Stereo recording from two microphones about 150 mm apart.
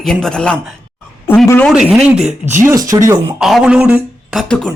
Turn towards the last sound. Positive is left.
turn(degrees=5)  # may be behind; listen again after turning